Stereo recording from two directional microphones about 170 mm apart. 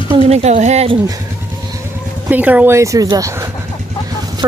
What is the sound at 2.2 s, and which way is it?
Speech, 10° right (ahead or behind).